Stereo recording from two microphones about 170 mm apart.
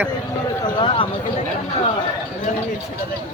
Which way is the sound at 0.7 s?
30° left (ahead or behind).